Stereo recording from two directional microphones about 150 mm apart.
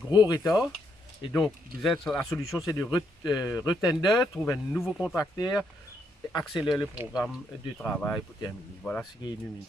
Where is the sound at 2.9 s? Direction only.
25° left (ahead or behind).